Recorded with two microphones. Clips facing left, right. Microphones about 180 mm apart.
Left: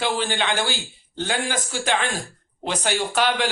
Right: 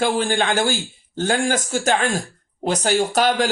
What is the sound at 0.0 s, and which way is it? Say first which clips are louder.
Speech: right 4 dB; 45° right (ahead or behind).